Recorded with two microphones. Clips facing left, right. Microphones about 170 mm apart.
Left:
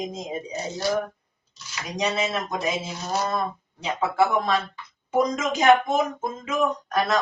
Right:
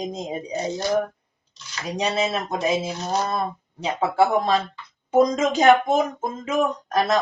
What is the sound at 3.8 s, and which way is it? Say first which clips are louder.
Speech: right 2 dB; 35° right (ahead or behind).